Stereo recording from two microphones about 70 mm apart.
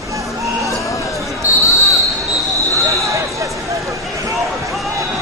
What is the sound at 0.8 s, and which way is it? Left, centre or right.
Basketball bounce, left.